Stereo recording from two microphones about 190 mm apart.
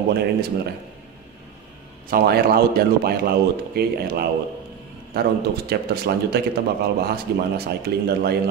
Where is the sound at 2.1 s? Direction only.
55° right (ahead or behind).